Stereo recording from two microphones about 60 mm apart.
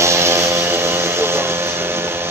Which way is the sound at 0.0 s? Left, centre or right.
Right.